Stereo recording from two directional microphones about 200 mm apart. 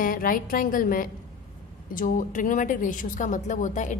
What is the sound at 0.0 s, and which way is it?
A woman's voice, 45° left (ahead or behind).